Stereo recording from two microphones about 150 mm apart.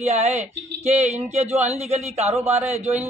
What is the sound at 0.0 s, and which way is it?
A man's voice, 50° right (ahead or behind).